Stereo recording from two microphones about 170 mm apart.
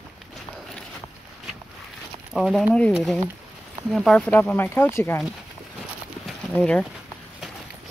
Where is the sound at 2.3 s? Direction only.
Centre (ahead or behind).